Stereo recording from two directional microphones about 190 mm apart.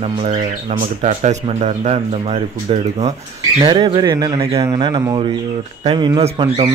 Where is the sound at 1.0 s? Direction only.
40° right (ahead or behind).